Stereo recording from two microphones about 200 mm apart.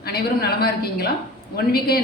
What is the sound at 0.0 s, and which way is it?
A woman's voice, 50° left (ahead or behind).